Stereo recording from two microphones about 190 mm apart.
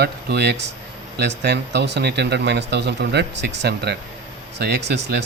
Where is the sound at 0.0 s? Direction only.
60° right (ahead or behind).